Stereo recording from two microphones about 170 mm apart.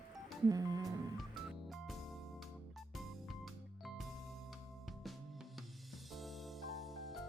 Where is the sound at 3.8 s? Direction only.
Centre (ahead or behind).